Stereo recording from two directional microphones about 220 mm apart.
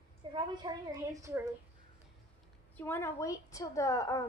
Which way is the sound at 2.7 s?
10° left (ahead or behind).